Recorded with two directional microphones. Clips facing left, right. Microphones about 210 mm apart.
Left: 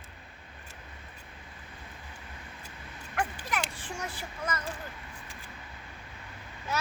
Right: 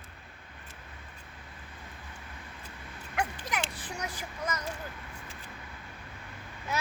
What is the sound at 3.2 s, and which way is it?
Dog, 10° right (ahead or behind).